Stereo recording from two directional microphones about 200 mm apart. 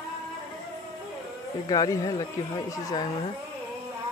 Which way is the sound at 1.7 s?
15° left (ahead or behind).